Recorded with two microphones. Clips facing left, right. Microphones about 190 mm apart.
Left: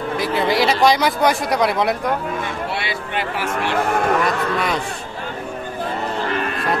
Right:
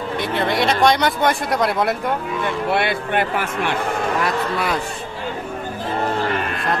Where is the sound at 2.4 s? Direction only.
55° right (ahead or behind).